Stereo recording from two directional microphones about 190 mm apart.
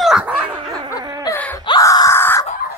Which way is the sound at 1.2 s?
10° left (ahead or behind).